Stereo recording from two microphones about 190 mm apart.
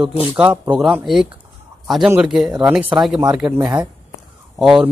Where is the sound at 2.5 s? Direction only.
20° right (ahead or behind).